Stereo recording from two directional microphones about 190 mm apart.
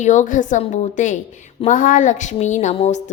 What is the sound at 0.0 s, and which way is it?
A woman's voice, 40° left (ahead or behind).